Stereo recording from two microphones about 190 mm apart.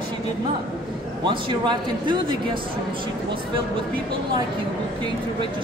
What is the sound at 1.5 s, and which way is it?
Speech, 25° right (ahead or behind).